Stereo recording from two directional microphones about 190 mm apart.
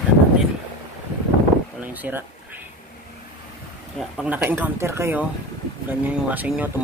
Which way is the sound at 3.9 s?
5° right (ahead or behind).